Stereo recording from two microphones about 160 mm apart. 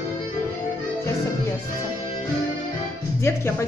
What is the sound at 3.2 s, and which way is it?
Speech, 15° left (ahead or behind).